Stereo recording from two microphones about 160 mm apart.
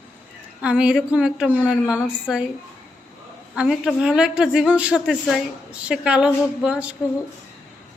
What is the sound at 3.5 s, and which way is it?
A woman's voice, 5° right (ahead or behind).